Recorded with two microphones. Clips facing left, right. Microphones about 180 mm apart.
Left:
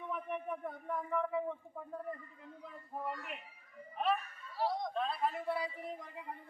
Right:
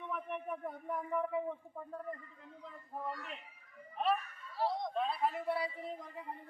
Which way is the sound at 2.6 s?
10° left (ahead or behind).